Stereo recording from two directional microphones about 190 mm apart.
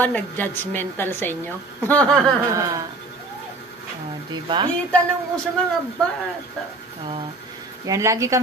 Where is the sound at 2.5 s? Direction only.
15° right (ahead or behind).